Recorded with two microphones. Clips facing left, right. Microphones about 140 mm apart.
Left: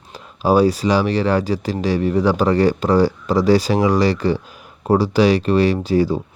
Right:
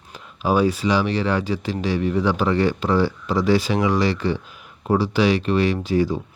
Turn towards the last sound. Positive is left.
turn(degrees=35)  # may be behind; listen again after turning